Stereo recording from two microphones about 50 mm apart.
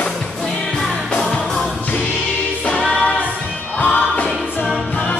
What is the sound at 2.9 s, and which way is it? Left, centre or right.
Singing, centre.